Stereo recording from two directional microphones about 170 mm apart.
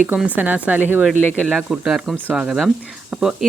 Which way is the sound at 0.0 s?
10° right (ahead or behind).